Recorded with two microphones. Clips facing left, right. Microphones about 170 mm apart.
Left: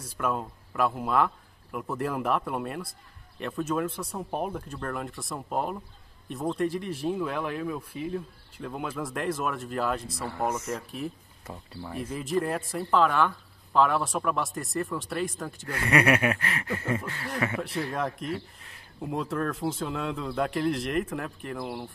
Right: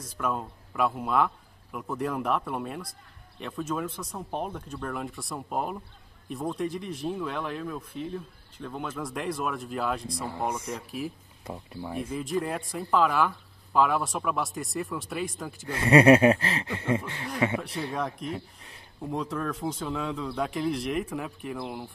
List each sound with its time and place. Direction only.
0.0 s speech: 5° left (ahead or behind)
10.2 s speech: 15° right (ahead or behind)
10.6 s speech: centre (ahead or behind)
11.8 s speech: 10° right (ahead or behind)
15.7 s speech: 30° right (ahead or behind)
17.6 s speech: centre (ahead or behind)